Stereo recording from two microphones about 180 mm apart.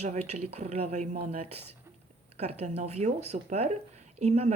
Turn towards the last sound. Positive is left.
turn(degrees=-35)  # may be behind; listen again after turning